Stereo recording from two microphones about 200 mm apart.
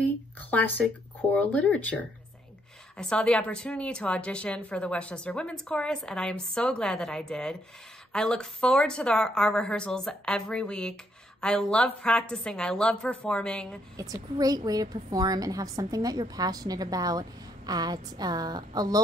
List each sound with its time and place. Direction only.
0.0 s a woman's voice: 10° left (ahead or behind)
13.9 s a woman's voice: 15° right (ahead or behind)